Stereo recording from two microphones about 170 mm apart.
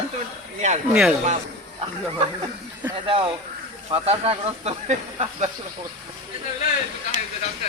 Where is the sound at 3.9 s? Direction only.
35° right (ahead or behind).